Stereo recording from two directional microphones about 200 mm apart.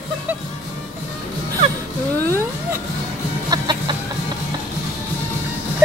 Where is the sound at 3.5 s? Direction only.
20° right (ahead or behind).